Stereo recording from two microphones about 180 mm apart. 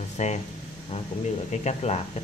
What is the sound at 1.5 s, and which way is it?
Speech, 40° left (ahead or behind).